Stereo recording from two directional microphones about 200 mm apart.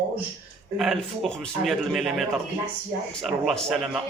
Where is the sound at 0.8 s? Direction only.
Centre (ahead or behind).